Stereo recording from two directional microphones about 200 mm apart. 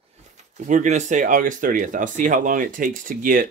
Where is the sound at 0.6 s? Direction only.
40° right (ahead or behind).